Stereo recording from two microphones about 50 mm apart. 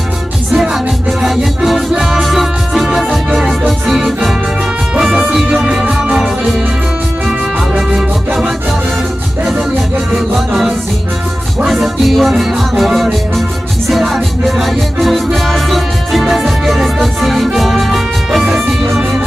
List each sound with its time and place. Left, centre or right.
0.5 s music: centre
4.0 s organ: centre
4.9 s music: centre
8.3 s music: centre
10.1 s music: centre